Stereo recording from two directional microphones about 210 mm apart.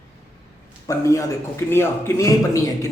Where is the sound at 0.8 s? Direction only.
15° left (ahead or behind).